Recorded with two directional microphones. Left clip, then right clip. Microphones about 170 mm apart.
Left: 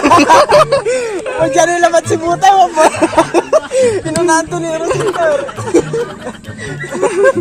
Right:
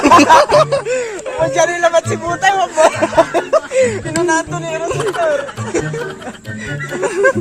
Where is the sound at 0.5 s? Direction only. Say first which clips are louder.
Left 3 dB; 15° right (ahead or behind).